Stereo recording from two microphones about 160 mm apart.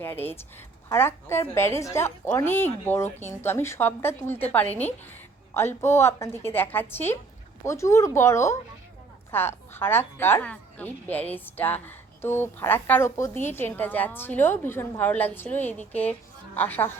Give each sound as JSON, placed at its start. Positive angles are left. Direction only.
{"t": 0.0, "sound": "speech", "side_deg": 10}
{"t": 5.5, "sound": "speech", "side_deg": 15}